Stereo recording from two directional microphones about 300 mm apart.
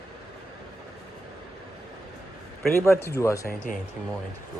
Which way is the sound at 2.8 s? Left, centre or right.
Centre.